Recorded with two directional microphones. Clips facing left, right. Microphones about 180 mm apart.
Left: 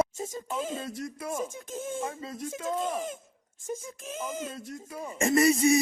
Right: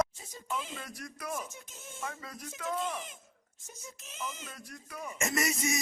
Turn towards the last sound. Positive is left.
turn(degrees=30)  # may be behind; listen again after turning